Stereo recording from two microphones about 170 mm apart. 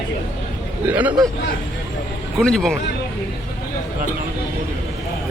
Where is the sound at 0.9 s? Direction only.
10° right (ahead or behind).